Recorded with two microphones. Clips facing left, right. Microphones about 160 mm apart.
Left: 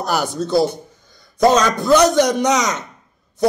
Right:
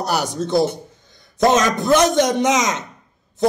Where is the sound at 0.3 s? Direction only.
20° right (ahead or behind).